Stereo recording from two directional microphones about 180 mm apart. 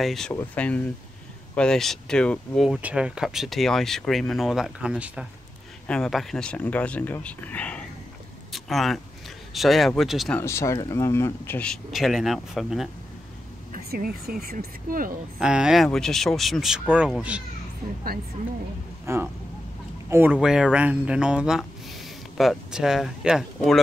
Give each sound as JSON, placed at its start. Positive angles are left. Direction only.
{"t": 0.0, "sound": "speech", "side_deg": 0}
{"t": 8.5, "sound": "a sound", "side_deg": 0}
{"t": 9.5, "sound": "speech", "side_deg": 0}
{"t": 10.4, "sound": "speech", "side_deg": 15}
{"t": 13.7, "sound": "speech", "side_deg": -60}
{"t": 15.3, "sound": "speech", "side_deg": -5}
{"t": 19.1, "sound": "speech", "side_deg": -15}